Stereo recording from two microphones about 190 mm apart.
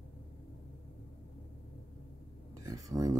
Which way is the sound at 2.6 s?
20° right (ahead or behind).